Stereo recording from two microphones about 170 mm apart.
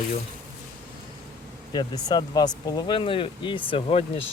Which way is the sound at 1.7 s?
25° left (ahead or behind).